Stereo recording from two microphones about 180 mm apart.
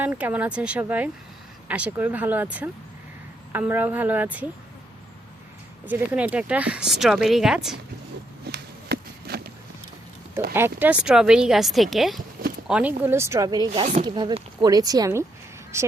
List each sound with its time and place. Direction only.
0.0 s speech: 10° right (ahead or behind)
5.8 s speech: 10° right (ahead or behind)
8.4 s a sound: 65° right (ahead or behind)
10.5 s speech: 10° right (ahead or behind)
13.7 s speech: 40° right (ahead or behind)
14.6 s a woman's voice: 20° right (ahead or behind)